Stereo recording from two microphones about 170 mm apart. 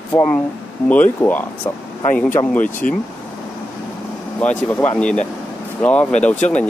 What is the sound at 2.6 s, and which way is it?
Speech, 50° left (ahead or behind).